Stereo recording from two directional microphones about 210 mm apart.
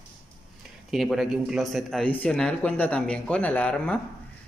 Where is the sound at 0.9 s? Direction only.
Centre (ahead or behind).